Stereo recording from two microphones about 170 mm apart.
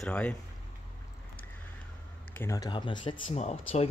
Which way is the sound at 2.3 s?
15° left (ahead or behind).